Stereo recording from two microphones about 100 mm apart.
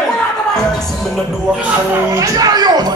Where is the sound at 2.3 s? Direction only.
40° right (ahead or behind).